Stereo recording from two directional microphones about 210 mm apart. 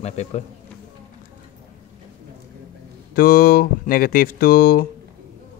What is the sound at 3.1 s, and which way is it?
Speech, 45° left (ahead or behind).